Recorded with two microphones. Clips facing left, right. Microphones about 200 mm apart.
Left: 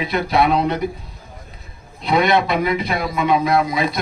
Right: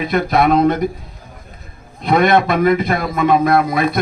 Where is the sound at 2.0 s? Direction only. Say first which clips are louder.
Right 3 dB; 50° right (ahead or behind).